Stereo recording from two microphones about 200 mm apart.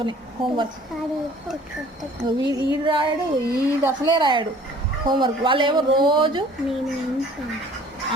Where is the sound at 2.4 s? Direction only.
25° right (ahead or behind).